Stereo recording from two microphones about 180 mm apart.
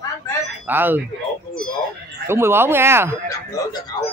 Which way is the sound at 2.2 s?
15° right (ahead or behind).